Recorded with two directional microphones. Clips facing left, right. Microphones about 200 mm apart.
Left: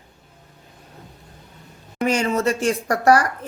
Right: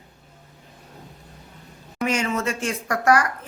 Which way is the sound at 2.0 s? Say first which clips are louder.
Left 4 dB; 35° left (ahead or behind).